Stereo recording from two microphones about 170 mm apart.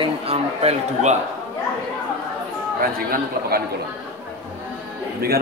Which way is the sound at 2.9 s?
60° right (ahead or behind).